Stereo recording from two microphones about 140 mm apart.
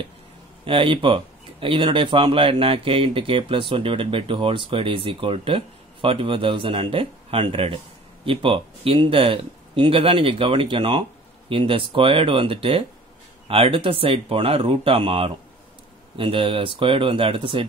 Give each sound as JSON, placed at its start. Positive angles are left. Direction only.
{"t": 0.7, "sound": "speech", "side_deg": -40}